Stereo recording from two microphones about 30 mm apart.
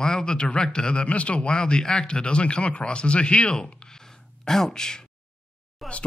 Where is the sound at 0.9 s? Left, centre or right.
Left.